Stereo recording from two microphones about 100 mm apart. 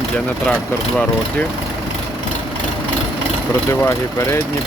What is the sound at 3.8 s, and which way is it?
Speech, 25° left (ahead or behind).